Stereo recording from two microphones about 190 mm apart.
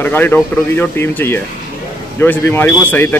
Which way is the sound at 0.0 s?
10° left (ahead or behind).